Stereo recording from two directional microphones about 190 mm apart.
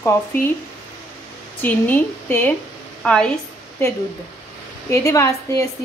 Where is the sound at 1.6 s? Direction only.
10° left (ahead or behind).